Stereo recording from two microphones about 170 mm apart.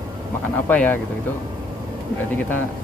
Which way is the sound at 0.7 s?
10° left (ahead or behind).